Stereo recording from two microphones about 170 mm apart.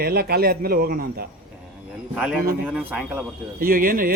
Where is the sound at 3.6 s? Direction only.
55° right (ahead or behind).